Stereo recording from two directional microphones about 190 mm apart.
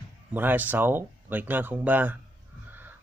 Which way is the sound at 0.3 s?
10° right (ahead or behind).